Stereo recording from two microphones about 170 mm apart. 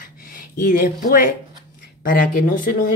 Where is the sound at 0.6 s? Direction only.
55° left (ahead or behind).